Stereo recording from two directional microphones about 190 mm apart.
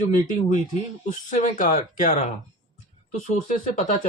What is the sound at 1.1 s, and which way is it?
Speech, 40° left (ahead or behind).